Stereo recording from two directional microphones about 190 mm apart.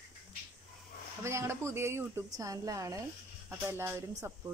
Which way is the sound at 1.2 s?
15° right (ahead or behind).